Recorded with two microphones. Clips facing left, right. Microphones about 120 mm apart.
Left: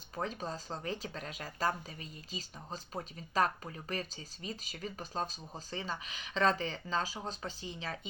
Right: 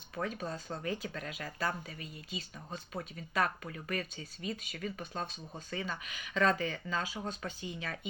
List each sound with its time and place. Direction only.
0.3 s speech: 30° left (ahead or behind)